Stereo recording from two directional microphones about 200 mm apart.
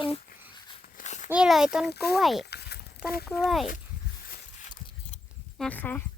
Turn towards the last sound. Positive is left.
turn(degrees=10)  # may be behind; listen again after turning